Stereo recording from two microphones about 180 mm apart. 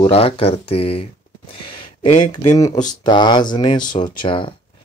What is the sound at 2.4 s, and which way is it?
Speech, 20° left (ahead or behind).